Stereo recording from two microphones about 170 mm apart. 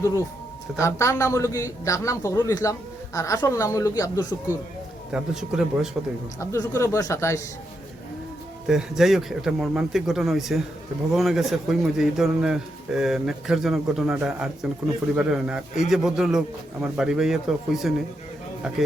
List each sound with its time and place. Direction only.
0.8 s a man's voice: 15° left (ahead or behind)
5.1 s a man's voice: 5° right (ahead or behind)
6.4 s speech: 15° left (ahead or behind)
8.6 s a man's voice: 5° right (ahead or behind)